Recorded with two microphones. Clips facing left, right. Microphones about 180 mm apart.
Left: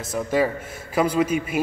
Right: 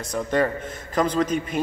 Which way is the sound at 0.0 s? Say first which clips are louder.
Left 1 dB; 5° left (ahead or behind).